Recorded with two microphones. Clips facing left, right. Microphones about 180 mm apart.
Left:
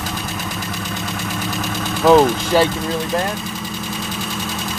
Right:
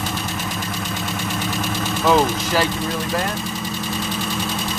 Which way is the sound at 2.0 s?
25° left (ahead or behind).